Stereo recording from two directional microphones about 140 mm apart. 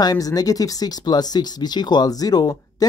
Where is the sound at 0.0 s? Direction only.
25° left (ahead or behind).